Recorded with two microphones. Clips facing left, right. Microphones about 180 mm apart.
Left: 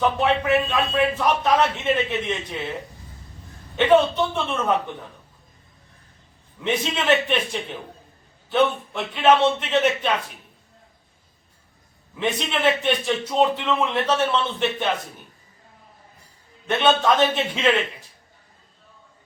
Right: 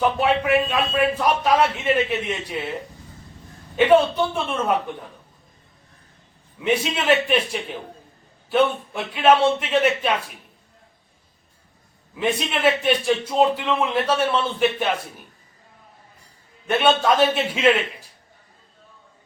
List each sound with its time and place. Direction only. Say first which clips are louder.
0.0 s a man's voice: right 1 dB; 5° right (ahead or behind)
3.8 s a man's voice: right 1 dB; 5° right (ahead or behind)
6.6 s a man's voice: right 2 dB; 5° right (ahead or behind)
12.1 s a man's voice: right 1 dB; 5° right (ahead or behind)
16.6 s a man's voice: right 1 dB; 5° right (ahead or behind)